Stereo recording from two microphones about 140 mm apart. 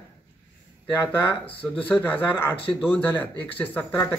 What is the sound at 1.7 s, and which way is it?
Speech, 15° left (ahead or behind).